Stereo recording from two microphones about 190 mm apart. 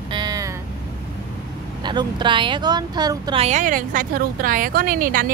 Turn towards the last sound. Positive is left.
turn(degrees=-45)  # may be behind; listen again after turning